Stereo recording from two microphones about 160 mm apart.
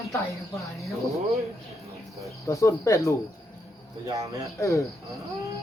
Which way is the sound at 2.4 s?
20° left (ahead or behind).